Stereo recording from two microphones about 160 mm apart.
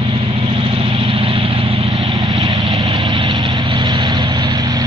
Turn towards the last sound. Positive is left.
turn(degrees=-25)  # may be behind; listen again after turning